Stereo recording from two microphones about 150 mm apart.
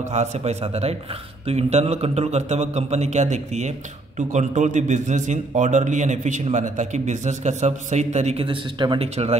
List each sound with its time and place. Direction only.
0.1 s a man's voice: 50° right (ahead or behind)